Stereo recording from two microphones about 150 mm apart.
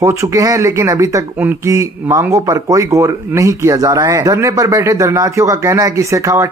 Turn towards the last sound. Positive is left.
turn(degrees=-20)  # may be behind; listen again after turning